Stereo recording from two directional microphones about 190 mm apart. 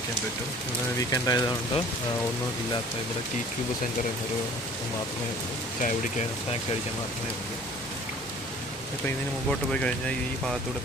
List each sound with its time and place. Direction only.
1.1 s speech: 20° left (ahead or behind)
9.0 s speech: 5° left (ahead or behind)